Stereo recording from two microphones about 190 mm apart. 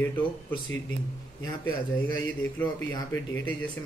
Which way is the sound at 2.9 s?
10° left (ahead or behind).